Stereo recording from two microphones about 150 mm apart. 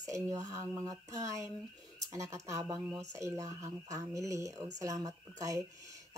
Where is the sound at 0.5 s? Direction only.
20° right (ahead or behind).